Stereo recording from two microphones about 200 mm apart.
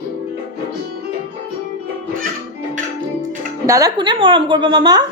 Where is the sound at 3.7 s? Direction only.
15° right (ahead or behind).